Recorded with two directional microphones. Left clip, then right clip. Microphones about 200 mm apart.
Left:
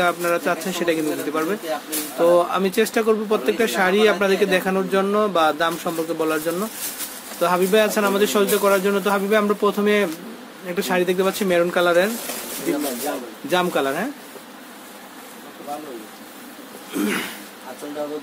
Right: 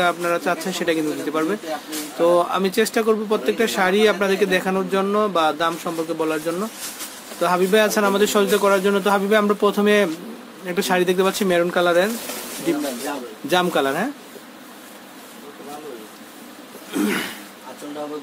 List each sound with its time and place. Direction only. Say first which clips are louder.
0.0 s speech: even; 5° right (ahead or behind)
7.3 s speech: even; 10° right (ahead or behind)
16.9 s speech: right 1 dB; 15° right (ahead or behind)